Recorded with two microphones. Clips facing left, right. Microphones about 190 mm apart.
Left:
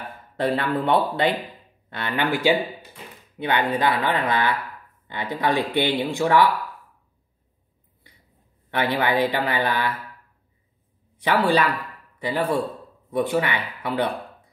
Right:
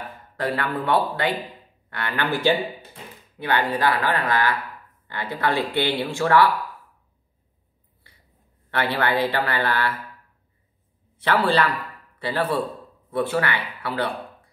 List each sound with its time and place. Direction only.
0.4 s speech: 25° left (ahead or behind)
3.3 s speech: 20° left (ahead or behind)
8.6 s speech: 15° left (ahead or behind)
11.1 s speech: 15° left (ahead or behind)